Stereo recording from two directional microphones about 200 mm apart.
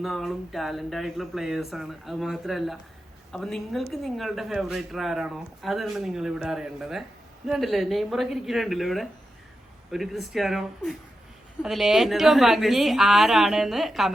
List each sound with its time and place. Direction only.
0.0 s speech: centre (ahead or behind)